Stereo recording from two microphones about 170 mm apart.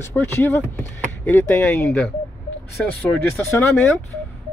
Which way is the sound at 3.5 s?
15° left (ahead or behind).